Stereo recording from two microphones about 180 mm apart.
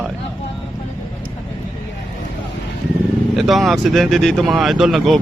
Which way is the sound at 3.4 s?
Centre (ahead or behind).